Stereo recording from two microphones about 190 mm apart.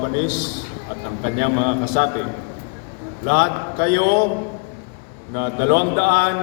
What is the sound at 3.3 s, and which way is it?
Speech, 50° right (ahead or behind).